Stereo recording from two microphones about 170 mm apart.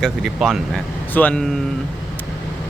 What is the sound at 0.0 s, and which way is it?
Speech, centre (ahead or behind).